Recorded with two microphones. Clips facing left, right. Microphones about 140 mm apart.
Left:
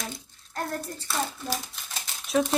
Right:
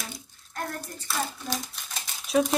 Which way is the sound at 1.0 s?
Centre (ahead or behind).